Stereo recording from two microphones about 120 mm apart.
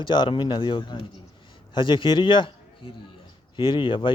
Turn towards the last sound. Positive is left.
turn(degrees=45)  # may be behind; listen again after turning